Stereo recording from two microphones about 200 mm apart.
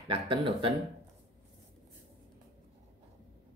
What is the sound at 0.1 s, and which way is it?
Speech, 25° right (ahead or behind).